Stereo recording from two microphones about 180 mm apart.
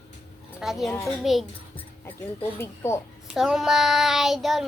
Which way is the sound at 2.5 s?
15° left (ahead or behind).